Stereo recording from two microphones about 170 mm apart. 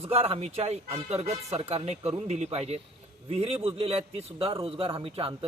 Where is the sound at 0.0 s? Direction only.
35° right (ahead or behind).